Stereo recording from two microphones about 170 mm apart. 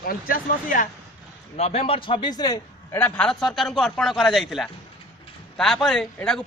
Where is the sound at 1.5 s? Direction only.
40° left (ahead or behind); by 3.0 s 25° left (ahead or behind).